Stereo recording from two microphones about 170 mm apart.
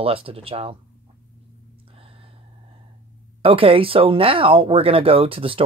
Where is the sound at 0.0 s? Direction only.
35° right (ahead or behind).